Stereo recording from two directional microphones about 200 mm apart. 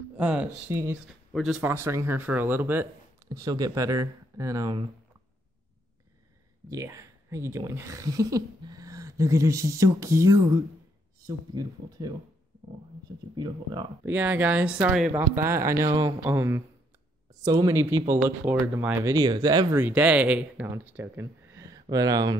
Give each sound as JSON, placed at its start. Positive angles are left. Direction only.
{"t": 0.2, "sound": "speech", "side_deg": -5}
{"t": 1.0, "sound": "speech", "side_deg": 0}
{"t": 6.7, "sound": "speech", "side_deg": -15}
{"t": 14.0, "sound": "speech", "side_deg": -10}